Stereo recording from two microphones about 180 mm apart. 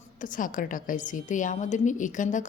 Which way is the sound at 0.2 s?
50° left (ahead or behind).